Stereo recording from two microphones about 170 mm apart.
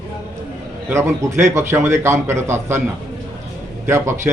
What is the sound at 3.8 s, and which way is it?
Speech, 15° right (ahead or behind).